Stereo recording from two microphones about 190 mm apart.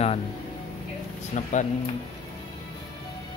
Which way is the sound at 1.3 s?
40° left (ahead or behind).